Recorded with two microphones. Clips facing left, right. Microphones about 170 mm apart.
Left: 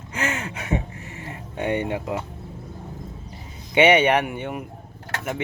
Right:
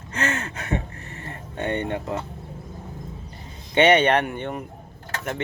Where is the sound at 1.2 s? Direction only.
10° left (ahead or behind).